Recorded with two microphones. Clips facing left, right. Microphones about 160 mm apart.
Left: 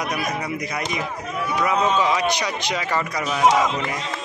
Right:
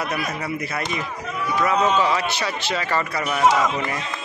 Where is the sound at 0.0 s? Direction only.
15° left (ahead or behind).